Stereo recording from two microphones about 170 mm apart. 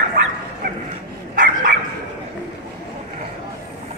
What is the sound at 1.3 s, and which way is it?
Bow-wow, 50° right (ahead or behind).